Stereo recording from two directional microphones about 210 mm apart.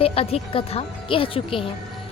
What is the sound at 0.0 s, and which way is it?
Speech, 25° left (ahead or behind).